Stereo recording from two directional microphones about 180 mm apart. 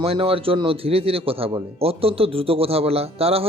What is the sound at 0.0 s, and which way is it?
A man's voice, 30° right (ahead or behind).